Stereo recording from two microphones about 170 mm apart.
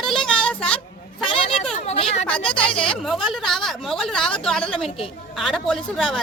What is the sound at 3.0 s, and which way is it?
Speech, centre (ahead or behind).